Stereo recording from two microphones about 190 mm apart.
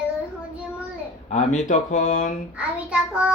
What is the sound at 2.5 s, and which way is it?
Child singing, 5° right (ahead or behind).